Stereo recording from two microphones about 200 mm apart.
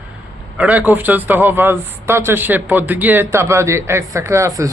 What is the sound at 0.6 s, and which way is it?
Speech, 5° right (ahead or behind).